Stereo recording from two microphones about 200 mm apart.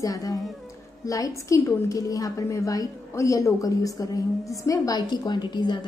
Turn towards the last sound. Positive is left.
turn(degrees=20)  # may be behind; listen again after turning